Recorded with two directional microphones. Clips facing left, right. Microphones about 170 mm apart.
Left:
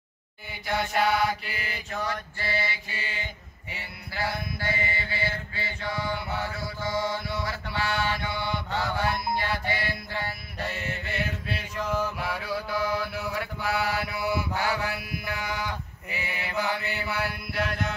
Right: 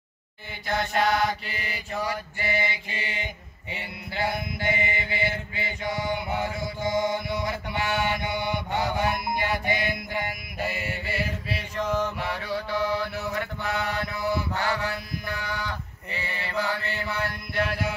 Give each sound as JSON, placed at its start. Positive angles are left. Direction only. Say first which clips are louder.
{"t": 0.7, "sound": "mantra", "louder": "right 1 dB", "side_deg": 5}
{"t": 2.0, "sound": "mantra", "louder": "right 2 dB", "side_deg": -15}
{"t": 17.6, "sound": "music", "louder": "right 2 dB", "side_deg": -5}